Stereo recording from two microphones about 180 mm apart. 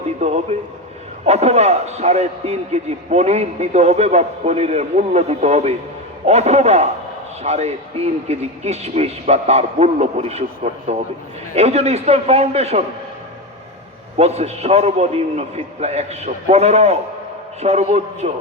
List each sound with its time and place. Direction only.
0.2 s a man's voice: 40° right (ahead or behind)
14.2 s a man's voice: 35° right (ahead or behind)